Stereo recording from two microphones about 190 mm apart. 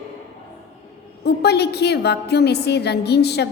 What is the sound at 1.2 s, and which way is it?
A woman's voice, 60° left (ahead or behind).